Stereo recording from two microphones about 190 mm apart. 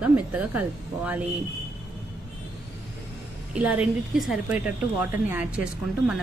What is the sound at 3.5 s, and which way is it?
A woman's voice, 10° right (ahead or behind).